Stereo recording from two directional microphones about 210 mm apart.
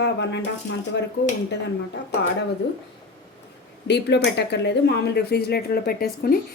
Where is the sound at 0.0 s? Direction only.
55° left (ahead or behind).